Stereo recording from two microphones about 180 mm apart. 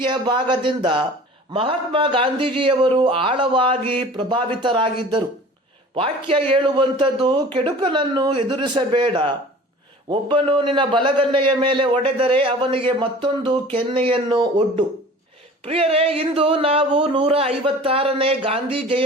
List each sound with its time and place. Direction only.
0.0 s a man's voice: 25° right (ahead or behind)